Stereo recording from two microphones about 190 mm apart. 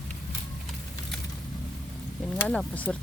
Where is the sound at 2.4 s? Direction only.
5° left (ahead or behind).